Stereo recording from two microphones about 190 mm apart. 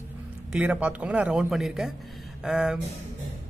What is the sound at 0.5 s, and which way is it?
A man's voice, 10° right (ahead or behind).